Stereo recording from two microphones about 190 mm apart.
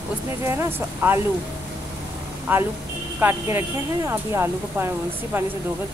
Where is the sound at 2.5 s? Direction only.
10° right (ahead or behind).